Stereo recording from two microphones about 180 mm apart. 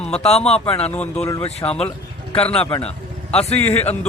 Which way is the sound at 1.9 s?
30° left (ahead or behind).